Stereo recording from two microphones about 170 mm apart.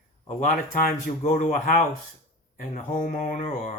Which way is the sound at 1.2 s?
50° left (ahead or behind).